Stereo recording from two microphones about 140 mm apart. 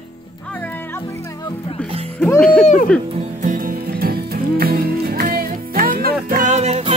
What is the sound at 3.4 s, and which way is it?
Music, 80° right.